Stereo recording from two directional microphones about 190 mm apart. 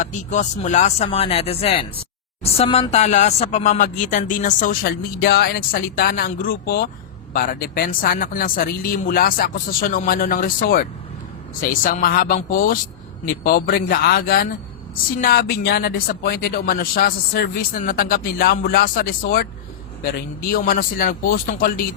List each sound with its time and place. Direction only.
0.0 s speech: 40° left (ahead or behind)